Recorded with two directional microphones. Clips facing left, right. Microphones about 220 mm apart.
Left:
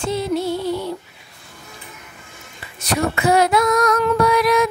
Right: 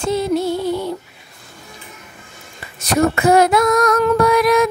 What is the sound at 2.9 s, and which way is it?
Female singing, 45° right (ahead or behind).